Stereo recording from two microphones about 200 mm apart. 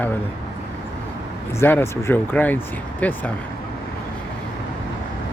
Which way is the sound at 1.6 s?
10° left (ahead or behind).